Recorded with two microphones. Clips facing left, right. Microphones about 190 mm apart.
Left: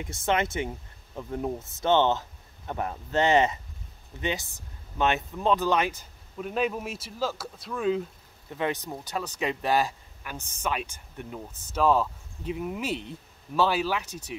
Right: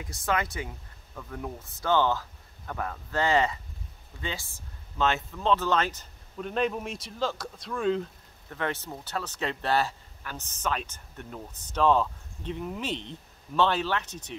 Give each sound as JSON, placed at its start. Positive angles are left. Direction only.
{"t": 0.0, "sound": "speech", "side_deg": 25}
{"t": 8.5, "sound": "speech", "side_deg": 15}